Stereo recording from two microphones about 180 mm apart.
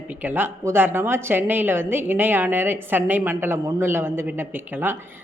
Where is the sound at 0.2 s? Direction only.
10° right (ahead or behind).